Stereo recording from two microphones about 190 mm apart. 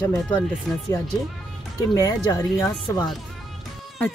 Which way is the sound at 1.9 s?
20° left (ahead or behind).